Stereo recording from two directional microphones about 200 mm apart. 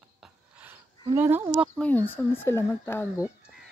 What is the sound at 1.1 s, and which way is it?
Speech, 10° right (ahead or behind).